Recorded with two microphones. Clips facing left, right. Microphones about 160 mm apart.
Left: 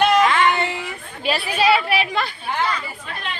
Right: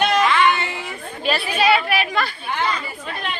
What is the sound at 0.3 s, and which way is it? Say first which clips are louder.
Music: right 1 dB; 45° left (ahead or behind).